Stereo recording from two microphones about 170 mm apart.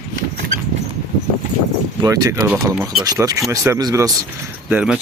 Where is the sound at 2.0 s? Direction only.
20° right (ahead or behind).